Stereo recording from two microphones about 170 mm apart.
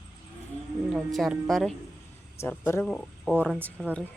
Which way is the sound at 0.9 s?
Centre (ahead or behind).